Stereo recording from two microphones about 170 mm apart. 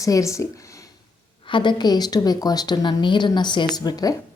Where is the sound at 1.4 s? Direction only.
30° left (ahead or behind).